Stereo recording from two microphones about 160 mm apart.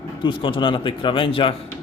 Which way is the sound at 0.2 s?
30° left (ahead or behind).